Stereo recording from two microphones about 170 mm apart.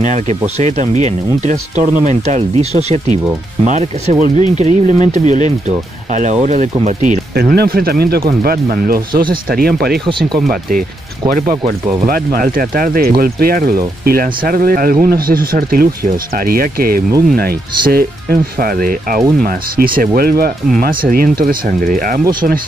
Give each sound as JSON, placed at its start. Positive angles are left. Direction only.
{"t": 0.0, "sound": "speech", "side_deg": -45}
{"t": 7.3, "sound": "speech", "side_deg": -65}
{"t": 10.0, "sound": "speech", "side_deg": -30}
{"t": 10.5, "sound": "speech", "side_deg": -60}